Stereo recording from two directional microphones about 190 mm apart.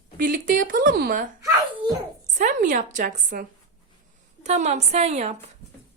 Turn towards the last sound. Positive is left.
turn(degrees=-35)  # may be behind; listen again after turning